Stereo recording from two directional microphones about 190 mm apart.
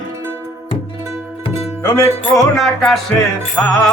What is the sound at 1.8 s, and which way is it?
Music, 15° left (ahead or behind).